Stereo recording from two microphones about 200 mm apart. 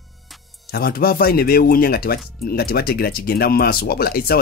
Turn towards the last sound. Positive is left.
turn(degrees=50)  # may be behind; listen again after turning